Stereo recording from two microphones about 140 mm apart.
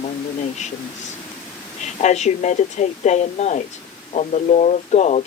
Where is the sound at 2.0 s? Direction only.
55° left (ahead or behind).